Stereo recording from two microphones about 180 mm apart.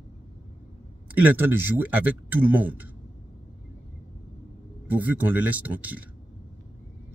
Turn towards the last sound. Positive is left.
turn(degrees=-10)  # may be behind; listen again after turning